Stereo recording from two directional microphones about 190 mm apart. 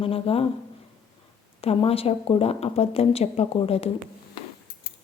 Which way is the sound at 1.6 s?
30° left (ahead or behind).